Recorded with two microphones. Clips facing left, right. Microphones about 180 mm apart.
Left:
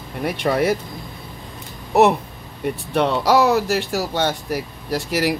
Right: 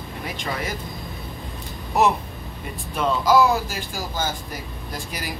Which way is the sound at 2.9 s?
70° left (ahead or behind).